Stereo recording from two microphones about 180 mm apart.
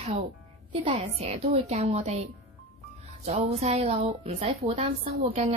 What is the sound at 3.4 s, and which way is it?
A woman's voice, 35° right (ahead or behind).